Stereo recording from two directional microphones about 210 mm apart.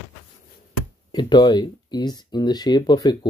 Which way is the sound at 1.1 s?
20° left (ahead or behind).